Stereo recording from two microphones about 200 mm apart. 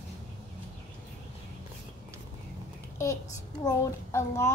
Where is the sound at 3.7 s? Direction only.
15° left (ahead or behind).